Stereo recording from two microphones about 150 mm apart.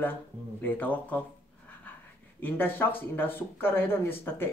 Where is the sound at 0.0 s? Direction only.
10° left (ahead or behind).